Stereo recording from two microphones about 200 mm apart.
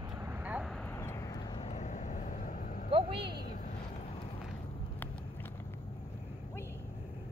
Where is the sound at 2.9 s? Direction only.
25° right (ahead or behind).